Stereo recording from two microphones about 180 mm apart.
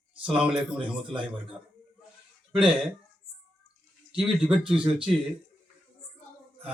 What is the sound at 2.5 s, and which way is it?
Speech, 5° right (ahead or behind).